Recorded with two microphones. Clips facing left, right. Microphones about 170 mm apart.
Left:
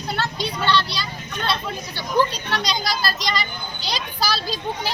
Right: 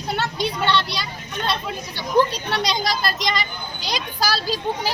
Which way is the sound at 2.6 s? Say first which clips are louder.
Right 2 dB; 25° right (ahead or behind).